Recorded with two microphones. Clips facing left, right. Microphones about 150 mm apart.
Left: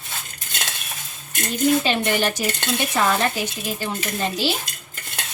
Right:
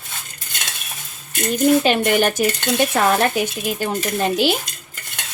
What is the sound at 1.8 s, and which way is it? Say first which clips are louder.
Speech: right 5 dB; 55° right (ahead or behind).